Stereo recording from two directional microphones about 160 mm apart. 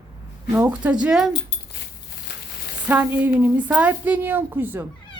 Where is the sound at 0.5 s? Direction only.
10° right (ahead or behind).